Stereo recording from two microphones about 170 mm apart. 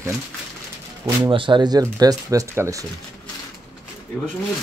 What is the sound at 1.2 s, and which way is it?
Speech, 30° right (ahead or behind).